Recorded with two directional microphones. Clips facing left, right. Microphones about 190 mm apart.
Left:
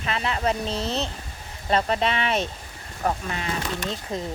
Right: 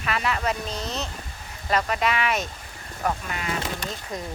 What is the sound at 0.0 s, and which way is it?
Speech, 30° left (ahead or behind).